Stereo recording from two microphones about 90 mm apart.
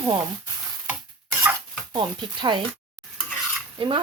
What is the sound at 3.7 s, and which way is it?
Dishes, 60° right (ahead or behind).